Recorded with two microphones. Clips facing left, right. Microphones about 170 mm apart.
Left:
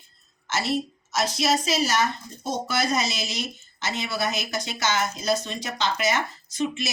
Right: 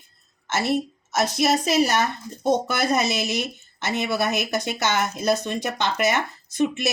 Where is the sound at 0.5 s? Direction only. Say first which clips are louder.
Right 3 dB; 55° right (ahead or behind).